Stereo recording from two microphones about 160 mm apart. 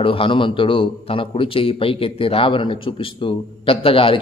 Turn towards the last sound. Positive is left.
turn(degrees=35)  # may be behind; listen again after turning